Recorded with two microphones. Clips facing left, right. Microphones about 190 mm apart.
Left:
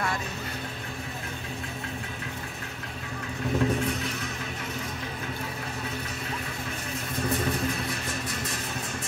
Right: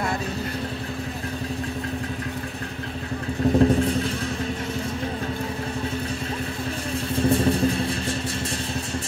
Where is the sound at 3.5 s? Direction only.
30° right (ahead or behind).